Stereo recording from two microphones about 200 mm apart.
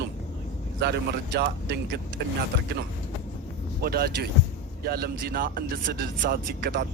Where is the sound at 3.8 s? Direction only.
50° right (ahead or behind).